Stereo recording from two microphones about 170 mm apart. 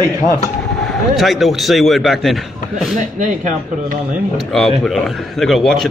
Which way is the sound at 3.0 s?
50° right (ahead or behind).